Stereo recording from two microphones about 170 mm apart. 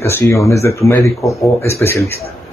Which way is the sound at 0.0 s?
15° left (ahead or behind).